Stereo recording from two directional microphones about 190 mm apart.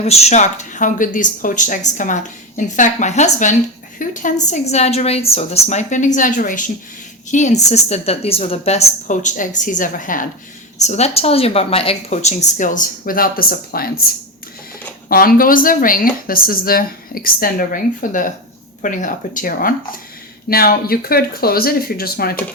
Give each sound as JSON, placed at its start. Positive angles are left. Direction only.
{"t": 0.0, "sound": "speech", "side_deg": 35}
{"t": 15.1, "sound": "speech", "side_deg": 50}